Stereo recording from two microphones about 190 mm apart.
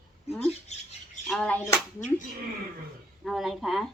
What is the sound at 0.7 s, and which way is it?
Speech, 35° left (ahead or behind).